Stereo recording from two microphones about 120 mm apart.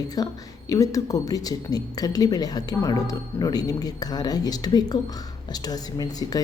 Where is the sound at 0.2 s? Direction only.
30° left (ahead or behind).